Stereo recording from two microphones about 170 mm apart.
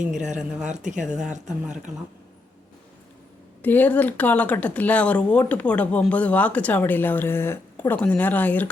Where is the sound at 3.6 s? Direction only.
10° left (ahead or behind).